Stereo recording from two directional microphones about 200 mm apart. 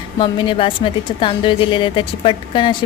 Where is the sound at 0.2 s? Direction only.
25° left (ahead or behind).